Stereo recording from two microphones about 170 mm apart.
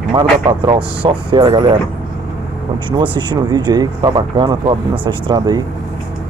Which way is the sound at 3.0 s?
30° right (ahead or behind).